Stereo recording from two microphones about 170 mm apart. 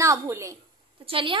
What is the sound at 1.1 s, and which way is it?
Speech, 30° right (ahead or behind).